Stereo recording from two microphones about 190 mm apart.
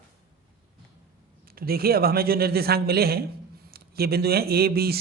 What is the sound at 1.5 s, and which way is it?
A man's voice, 50° right (ahead or behind).